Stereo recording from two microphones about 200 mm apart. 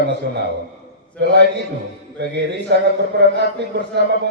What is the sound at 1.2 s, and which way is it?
Speech, 60° right (ahead or behind).